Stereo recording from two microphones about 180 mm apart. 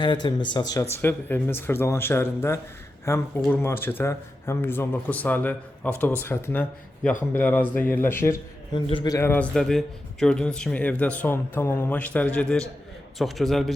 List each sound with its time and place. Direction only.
0.0 s a man's voice: 25° left (ahead or behind)
8.7 s a man's voice: 25° left (ahead or behind)
9.1 s a man's voice: 10° left (ahead or behind)